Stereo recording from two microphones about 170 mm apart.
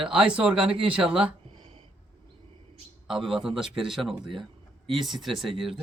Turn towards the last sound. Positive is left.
turn(degrees=0)  # may be behind; listen again after turning